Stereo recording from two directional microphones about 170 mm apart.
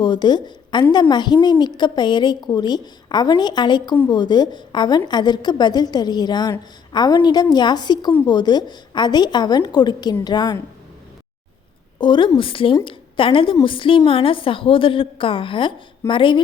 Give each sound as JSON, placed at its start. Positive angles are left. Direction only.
{"t": 0.0, "sound": "a woman's voice", "side_deg": 25}
{"t": 11.9, "sound": "a woman's voice", "side_deg": 25}